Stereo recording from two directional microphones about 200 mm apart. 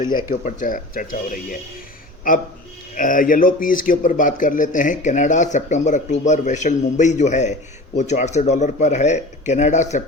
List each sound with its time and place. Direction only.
0.0 s speech: 20° left (ahead or behind)
0.4 s a man's voice: 40° left (ahead or behind)